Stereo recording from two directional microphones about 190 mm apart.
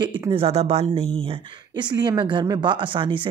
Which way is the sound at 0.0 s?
25° right (ahead or behind).